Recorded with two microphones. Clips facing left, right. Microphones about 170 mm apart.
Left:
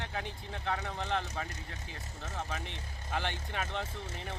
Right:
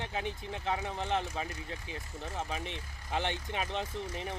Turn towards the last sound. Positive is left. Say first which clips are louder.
# right 3 dB
turn(degrees=-15)  # may be behind; listen again after turning